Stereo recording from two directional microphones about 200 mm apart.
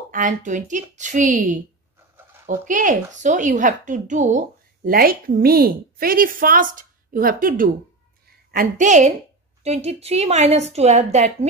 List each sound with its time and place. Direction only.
0.1 s a woman's voice: 40° right (ahead or behind)